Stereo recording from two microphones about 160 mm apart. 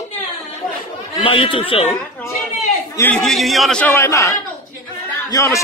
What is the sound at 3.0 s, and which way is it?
Speech, 5° left (ahead or behind).